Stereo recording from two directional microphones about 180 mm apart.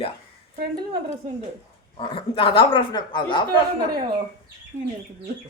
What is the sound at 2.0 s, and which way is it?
Speech, 30° left (ahead or behind).